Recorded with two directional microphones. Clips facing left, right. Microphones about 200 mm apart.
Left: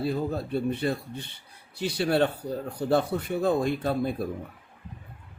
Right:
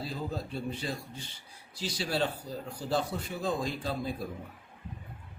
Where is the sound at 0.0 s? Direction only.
60° left (ahead or behind).